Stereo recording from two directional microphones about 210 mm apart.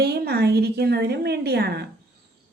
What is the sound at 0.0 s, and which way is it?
Speech, 50° right (ahead or behind).